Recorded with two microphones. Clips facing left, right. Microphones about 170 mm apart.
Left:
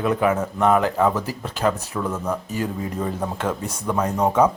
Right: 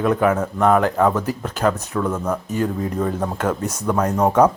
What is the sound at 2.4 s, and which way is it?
Speech, 40° right (ahead or behind).